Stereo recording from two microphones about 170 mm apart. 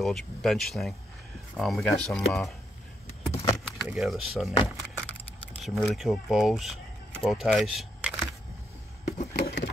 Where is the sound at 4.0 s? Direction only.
Centre (ahead or behind).